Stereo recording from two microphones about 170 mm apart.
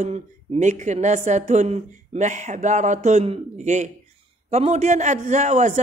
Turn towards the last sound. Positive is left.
turn(degrees=-45)  # may be behind; listen again after turning